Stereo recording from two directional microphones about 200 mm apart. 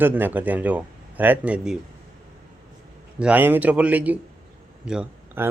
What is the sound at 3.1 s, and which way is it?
A man's voice, 5° right (ahead or behind).